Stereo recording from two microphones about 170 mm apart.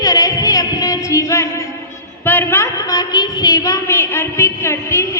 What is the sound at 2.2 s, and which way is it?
A woman's voice, 15° left (ahead or behind).